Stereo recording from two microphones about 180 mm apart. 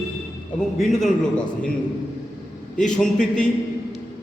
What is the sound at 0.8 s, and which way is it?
Speech, centre (ahead or behind).